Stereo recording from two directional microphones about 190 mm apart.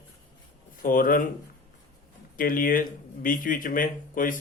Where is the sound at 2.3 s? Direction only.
45° left (ahead or behind).